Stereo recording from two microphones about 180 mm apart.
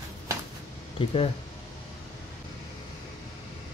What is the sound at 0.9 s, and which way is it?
Speech, 30° left (ahead or behind).